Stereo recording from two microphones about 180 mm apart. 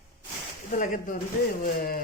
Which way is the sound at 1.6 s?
55° left (ahead or behind).